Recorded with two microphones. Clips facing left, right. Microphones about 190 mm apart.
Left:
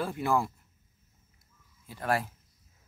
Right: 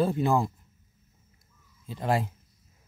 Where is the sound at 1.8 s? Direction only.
20° right (ahead or behind).